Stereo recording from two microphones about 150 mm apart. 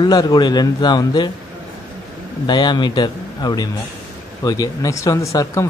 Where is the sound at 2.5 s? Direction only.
30° left (ahead or behind).